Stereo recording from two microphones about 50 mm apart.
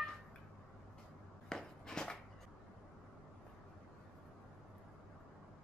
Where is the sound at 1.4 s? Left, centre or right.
Centre.